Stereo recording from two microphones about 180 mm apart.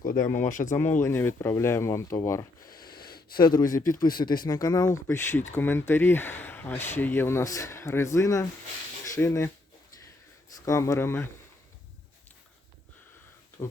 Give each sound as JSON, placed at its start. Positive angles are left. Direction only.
{"t": 0.0, "sound": "speech", "side_deg": 45}
{"t": 0.7, "sound": "speech", "side_deg": 15}
{"t": 2.9, "sound": "a sound", "side_deg": 55}
{"t": 3.3, "sound": "speech", "side_deg": 25}
{"t": 10.5, "sound": "speech", "side_deg": 20}
{"t": 13.6, "sound": "speech", "side_deg": 20}